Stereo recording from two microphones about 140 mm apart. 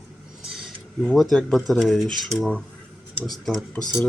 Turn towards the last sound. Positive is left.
turn(degrees=0)  # may be behind; listen again after turning